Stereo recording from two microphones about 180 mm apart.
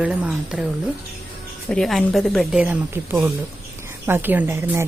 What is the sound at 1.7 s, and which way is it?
A woman's voice, centre (ahead or behind).